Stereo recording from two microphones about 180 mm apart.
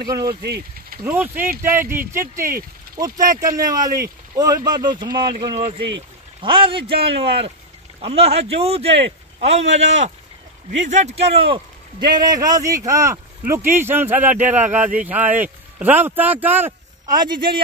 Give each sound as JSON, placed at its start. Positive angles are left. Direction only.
{"t": 0.1, "sound": "speech", "side_deg": -25}
{"t": 0.4, "sound": "speech", "side_deg": -65}
{"t": 1.0, "sound": "speech", "side_deg": -10}
{"t": 12.1, "sound": "speech", "side_deg": -20}
{"t": 17.2, "sound": "speech", "side_deg": -25}